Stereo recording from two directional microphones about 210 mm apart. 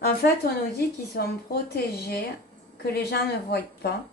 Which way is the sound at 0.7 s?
50° left (ahead or behind).